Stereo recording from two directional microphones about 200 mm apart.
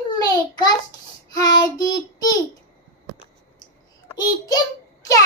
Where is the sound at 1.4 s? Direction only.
20° left (ahead or behind).